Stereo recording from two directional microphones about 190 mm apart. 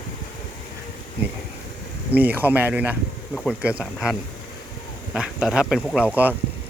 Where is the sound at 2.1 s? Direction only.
10° right (ahead or behind).